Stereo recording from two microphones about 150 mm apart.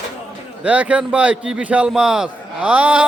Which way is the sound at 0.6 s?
10° right (ahead or behind).